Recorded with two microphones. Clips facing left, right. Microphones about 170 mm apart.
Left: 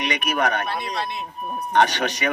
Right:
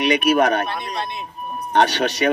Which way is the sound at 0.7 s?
5° left (ahead or behind).